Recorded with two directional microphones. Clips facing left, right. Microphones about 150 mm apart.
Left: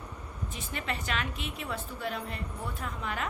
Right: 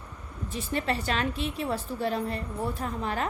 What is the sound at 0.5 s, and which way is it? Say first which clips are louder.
A woman's voice: right 8 dB; 35° right (ahead or behind).